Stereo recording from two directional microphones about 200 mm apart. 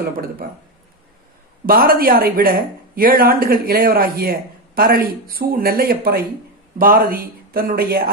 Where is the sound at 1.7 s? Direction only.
45° right (ahead or behind).